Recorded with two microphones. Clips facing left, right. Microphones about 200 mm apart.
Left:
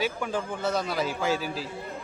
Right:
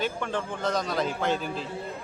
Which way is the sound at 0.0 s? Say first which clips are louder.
Left 1 dB; 5° left (ahead or behind).